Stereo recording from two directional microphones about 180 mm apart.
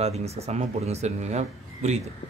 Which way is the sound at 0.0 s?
35° right (ahead or behind).